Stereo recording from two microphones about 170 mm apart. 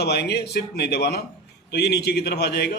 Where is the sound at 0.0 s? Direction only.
75° left (ahead or behind).